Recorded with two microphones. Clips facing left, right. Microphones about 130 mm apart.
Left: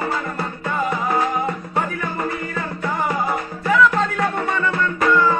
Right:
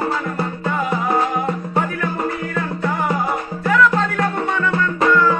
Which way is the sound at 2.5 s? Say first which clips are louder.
Right 3 dB; centre (ahead or behind).